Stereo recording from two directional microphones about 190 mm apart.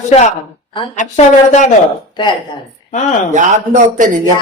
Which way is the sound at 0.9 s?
40° left (ahead or behind).